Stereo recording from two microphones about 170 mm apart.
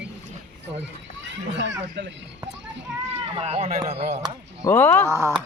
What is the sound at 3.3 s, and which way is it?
Speech, 35° right (ahead or behind).